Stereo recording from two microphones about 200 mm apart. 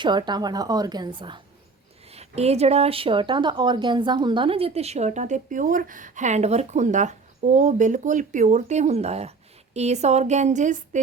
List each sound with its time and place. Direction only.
0.0 s a woman's voice: 20° right (ahead or behind); by 11.0 s 40° right (ahead or behind)